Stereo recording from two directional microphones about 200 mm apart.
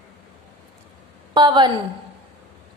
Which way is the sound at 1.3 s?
20° right (ahead or behind).